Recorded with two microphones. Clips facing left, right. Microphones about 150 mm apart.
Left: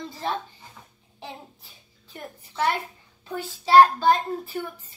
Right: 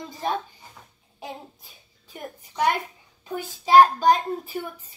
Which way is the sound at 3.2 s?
15° right (ahead or behind).